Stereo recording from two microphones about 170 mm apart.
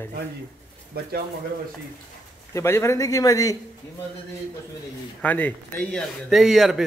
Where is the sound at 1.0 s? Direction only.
65° right (ahead or behind).